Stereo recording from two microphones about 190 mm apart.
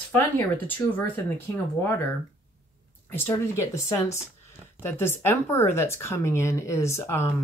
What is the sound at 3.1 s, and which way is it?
Speech, 10° left (ahead or behind).